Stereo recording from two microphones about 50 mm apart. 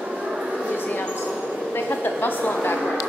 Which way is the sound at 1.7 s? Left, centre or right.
Left.